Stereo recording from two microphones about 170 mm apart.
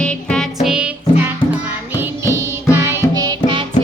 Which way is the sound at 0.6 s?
5° right (ahead or behind).